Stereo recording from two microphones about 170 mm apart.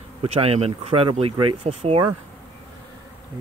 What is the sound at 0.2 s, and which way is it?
Speech, 35° right (ahead or behind).